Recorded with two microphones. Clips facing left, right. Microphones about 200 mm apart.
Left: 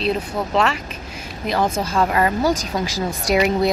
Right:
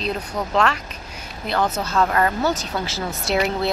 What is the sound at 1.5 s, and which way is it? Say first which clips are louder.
A woman's voice: left 2 dB; 10° left (ahead or behind).